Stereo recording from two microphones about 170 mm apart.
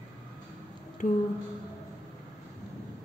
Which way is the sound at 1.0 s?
45° left (ahead or behind).